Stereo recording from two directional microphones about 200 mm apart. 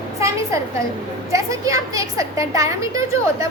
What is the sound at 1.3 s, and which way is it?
A woman's voice, 15° right (ahead or behind).